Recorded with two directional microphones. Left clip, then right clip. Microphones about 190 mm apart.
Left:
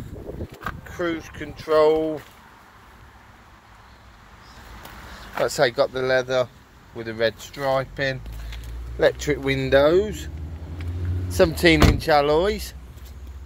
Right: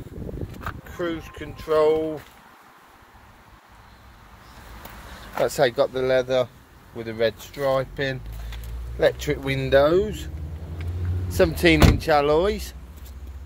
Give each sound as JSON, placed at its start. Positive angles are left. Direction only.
{"t": 0.8, "sound": "speech", "side_deg": 15}
{"t": 5.4, "sound": "speech", "side_deg": -10}
{"t": 11.3, "sound": "speech", "side_deg": 5}